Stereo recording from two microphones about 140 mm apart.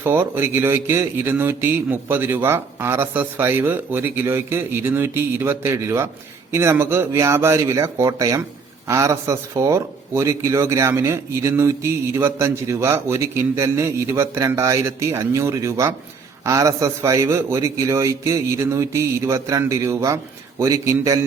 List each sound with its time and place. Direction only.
0.0 s speech: 15° right (ahead or behind)